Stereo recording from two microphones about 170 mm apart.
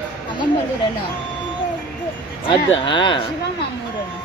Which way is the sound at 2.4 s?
30° left (ahead or behind).